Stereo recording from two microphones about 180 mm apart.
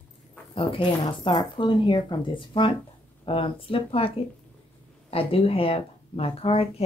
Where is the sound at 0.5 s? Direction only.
25° left (ahead or behind).